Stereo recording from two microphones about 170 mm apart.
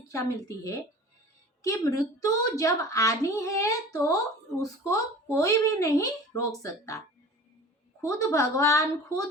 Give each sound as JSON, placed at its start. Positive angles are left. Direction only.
{"t": 0.1, "sound": "a woman's voice", "side_deg": 20}
{"t": 8.0, "sound": "a woman's voice", "side_deg": 20}